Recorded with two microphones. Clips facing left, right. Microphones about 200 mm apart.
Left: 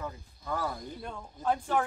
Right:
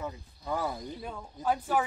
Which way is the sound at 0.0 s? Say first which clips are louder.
Right 2 dB; 15° right (ahead or behind).